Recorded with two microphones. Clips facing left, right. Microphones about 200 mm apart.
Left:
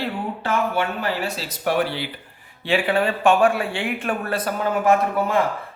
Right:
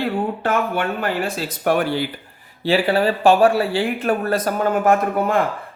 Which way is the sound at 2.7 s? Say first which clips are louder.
Right 3 dB; 35° right (ahead or behind).